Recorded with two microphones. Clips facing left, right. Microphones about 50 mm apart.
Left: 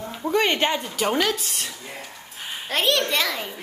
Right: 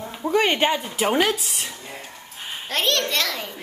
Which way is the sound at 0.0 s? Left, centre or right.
Centre.